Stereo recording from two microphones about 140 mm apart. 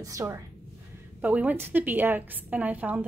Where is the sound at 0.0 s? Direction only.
25° right (ahead or behind).